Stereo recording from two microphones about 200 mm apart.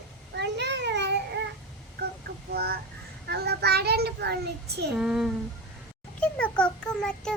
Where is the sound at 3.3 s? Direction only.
55° right (ahead or behind).